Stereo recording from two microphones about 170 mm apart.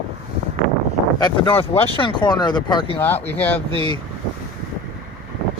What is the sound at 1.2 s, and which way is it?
Speech, 30° left (ahead or behind).